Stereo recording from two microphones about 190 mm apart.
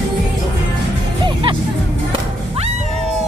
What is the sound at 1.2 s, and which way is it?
Music, 25° right (ahead or behind).